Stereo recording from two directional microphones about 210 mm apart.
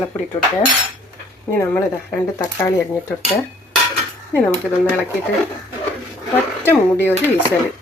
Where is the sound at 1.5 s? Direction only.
10° left (ahead or behind).